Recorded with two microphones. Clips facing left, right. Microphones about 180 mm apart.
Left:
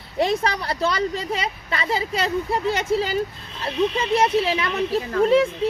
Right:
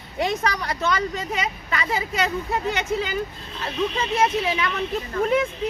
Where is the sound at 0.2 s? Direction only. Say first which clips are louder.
Left 3 dB; 30° left (ahead or behind).